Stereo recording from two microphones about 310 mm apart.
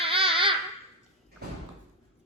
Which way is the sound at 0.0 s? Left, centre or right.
Centre.